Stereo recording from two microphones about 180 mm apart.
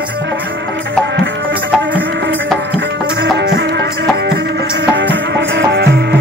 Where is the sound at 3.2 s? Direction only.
70° right (ahead or behind).